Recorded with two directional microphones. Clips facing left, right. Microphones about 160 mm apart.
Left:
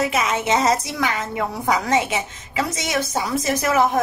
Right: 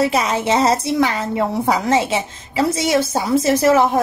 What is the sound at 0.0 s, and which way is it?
A woman's voice, 35° right (ahead or behind).